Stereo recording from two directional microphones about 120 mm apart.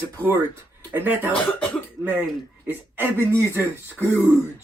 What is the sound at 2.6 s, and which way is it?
A man's voice, 20° right (ahead or behind).